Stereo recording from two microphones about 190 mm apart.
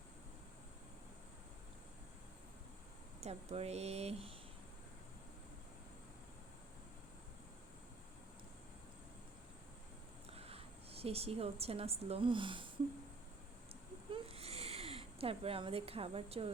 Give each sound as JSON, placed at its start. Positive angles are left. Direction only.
{"t": 3.2, "sound": "speech", "side_deg": -35}
{"t": 10.3, "sound": "a woman's voice", "side_deg": -30}
{"t": 14.1, "sound": "a sound", "side_deg": -30}